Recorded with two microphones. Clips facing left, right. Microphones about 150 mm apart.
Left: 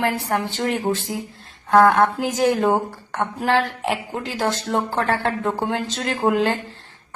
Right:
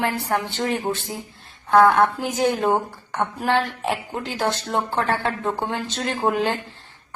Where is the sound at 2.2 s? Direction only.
90° left.